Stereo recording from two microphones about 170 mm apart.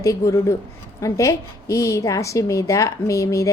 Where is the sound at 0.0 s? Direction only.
20° left (ahead or behind).